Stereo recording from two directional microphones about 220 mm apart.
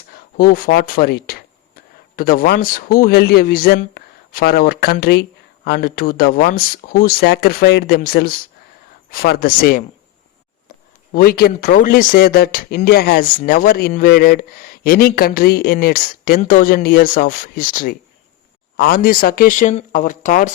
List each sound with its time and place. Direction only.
0.3 s speech: 40° left (ahead or behind)
11.1 s speech: 45° left (ahead or behind)